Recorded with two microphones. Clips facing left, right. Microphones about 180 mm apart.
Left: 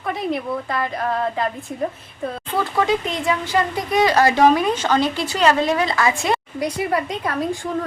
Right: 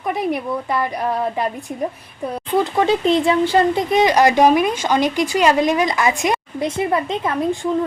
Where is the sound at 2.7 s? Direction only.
30° right (ahead or behind).